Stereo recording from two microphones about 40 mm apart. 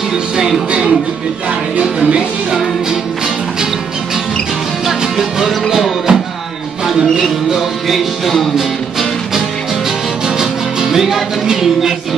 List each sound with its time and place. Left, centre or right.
0.7 s music: right
4.8 s music: centre
7.9 s music: centre
10.2 s music: centre